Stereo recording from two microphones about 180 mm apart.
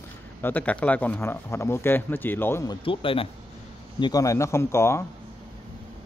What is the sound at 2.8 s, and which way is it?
Speech, 30° left (ahead or behind).